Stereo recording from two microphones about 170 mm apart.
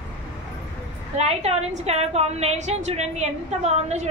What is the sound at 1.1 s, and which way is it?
A woman's voice, 40° right (ahead or behind).